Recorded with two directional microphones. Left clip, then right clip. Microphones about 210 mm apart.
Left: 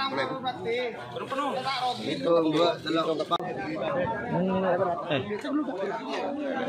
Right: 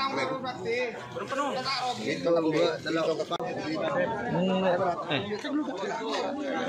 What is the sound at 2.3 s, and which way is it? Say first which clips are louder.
Speech: left 3 dB; 45° left (ahead or behind).